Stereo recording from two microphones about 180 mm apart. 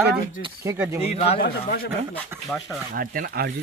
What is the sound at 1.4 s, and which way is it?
Speech, 55° left (ahead or behind).